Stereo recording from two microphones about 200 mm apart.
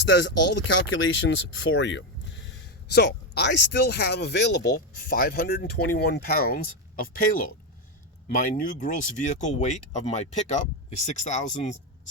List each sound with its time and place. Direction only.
0.0 s speech: 60° left (ahead or behind)
0.8 s speech: 75° left (ahead or behind)
2.9 s speech: 55° left (ahead or behind)
4.7 s speech: 45° left (ahead or behind)